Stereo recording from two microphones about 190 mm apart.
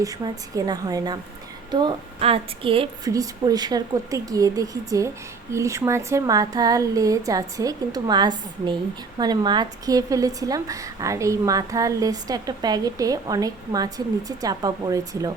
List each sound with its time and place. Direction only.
0.0 s speech: 20° right (ahead or behind)